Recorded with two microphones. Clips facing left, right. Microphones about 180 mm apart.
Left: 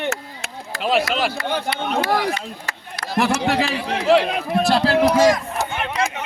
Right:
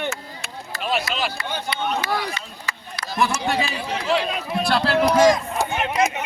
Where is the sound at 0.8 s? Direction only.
90° left; by 4.9 s 40° left (ahead or behind).